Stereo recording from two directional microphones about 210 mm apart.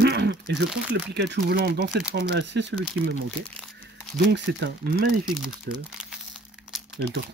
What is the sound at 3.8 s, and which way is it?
Speech, 55° right (ahead or behind).